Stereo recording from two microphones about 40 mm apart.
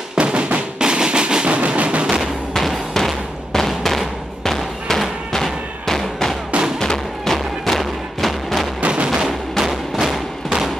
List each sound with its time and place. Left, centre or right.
0.2 s music: right
2.5 s a sound: centre
6.8 s music: centre
7.3 s music: centre
8.8 s music: right
9.6 s music: centre
10.1 s a sound: centre